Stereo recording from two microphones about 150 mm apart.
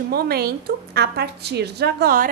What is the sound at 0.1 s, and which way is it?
A woman's voice, 90° right.